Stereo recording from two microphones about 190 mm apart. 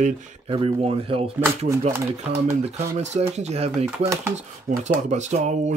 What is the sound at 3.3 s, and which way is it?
Speech, 35° right (ahead or behind).